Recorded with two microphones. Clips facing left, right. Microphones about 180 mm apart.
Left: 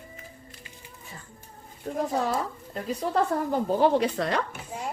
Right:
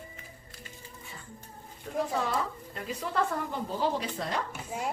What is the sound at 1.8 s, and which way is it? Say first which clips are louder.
Speech: left 4 dB; 40° left (ahead or behind).